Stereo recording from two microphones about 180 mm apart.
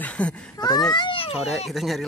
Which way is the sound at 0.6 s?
20° left (ahead or behind).